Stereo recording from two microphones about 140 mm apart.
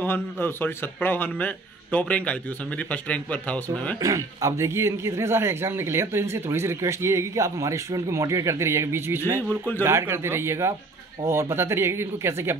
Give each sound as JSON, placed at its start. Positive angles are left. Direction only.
{"t": 0.0, "sound": "speech", "side_deg": 15}
{"t": 4.0, "sound": "speech", "side_deg": -25}